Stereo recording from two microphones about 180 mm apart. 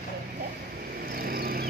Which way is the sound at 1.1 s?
55° right (ahead or behind).